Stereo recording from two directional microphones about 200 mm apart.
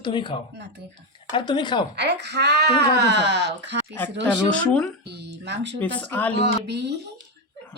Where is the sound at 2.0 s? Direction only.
55° right (ahead or behind).